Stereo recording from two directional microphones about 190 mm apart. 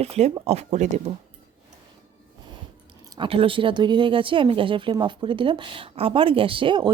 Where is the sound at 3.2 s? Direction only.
30° right (ahead or behind).